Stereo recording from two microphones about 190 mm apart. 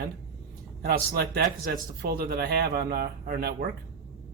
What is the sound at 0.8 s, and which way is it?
Speech, 50° right (ahead or behind).